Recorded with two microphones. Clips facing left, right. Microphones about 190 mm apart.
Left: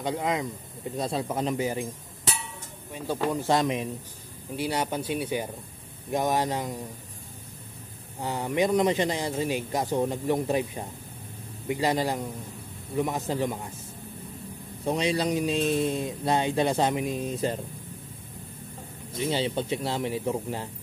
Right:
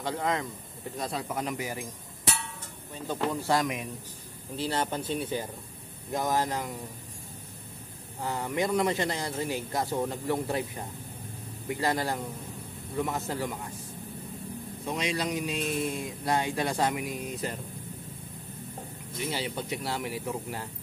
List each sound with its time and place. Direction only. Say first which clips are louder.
0.0 s speech: left 2 dB; 15° left (ahead or behind)
2.9 s speech: left 3 dB; 10° left (ahead or behind)
3.4 s speech: left 4 dB; 25° left (ahead or behind)
4.6 s speech: left 2 dB; 10° left (ahead or behind)
8.2 s speech: left 4 dB; 15° left (ahead or behind)
14.9 s speech: left 5 dB; 30° left (ahead or behind)
19.1 s speech: left 6 dB; 25° left (ahead or behind)